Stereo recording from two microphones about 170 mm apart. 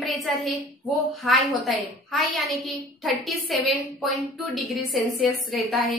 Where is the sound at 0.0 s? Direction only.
Centre (ahead or behind).